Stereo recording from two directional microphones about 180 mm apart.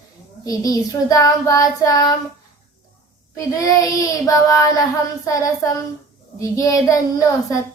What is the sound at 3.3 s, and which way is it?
Child singing, 20° left (ahead or behind).